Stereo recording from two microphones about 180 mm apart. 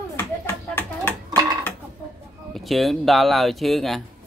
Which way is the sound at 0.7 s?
10° left (ahead or behind).